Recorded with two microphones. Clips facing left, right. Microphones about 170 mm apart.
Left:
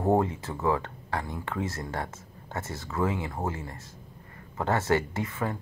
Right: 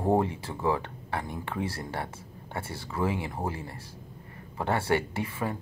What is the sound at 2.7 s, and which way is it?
Speech, 10° right (ahead or behind).